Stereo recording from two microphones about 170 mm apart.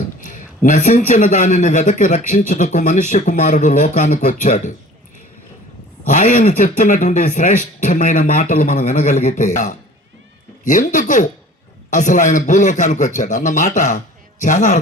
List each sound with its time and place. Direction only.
0.3 s a man's voice: 45° left (ahead or behind)
6.1 s a man's voice: 50° left (ahead or behind)